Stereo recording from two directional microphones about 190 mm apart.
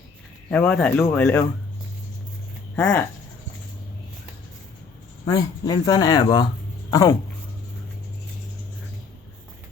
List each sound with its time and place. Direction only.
0.5 s speech: 5° left (ahead or behind)
2.7 s speech: 5° left (ahead or behind)
5.3 s speech: 20° left (ahead or behind)